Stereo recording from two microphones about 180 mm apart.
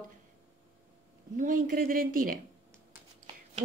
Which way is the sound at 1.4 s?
50° right (ahead or behind).